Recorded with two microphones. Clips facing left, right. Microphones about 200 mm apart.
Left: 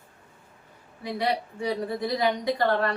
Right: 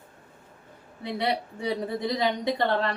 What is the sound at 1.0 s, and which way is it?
A woman's voice, 20° right (ahead or behind).